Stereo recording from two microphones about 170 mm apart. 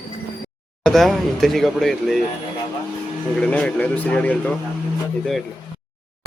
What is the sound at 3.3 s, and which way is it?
Speech, 5° left (ahead or behind).